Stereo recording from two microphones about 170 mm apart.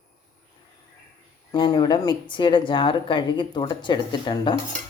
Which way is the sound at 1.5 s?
25° left (ahead or behind).